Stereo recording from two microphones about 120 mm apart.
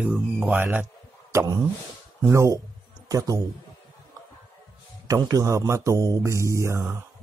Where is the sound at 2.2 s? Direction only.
25° right (ahead or behind).